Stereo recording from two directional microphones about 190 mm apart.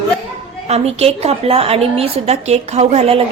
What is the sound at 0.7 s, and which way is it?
A woman's voice, 35° right (ahead or behind).